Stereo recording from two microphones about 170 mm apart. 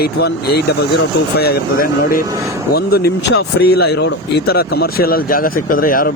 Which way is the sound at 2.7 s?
70° left (ahead or behind).